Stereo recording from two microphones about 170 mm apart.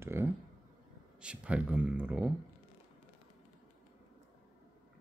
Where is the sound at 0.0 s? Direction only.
15° right (ahead or behind).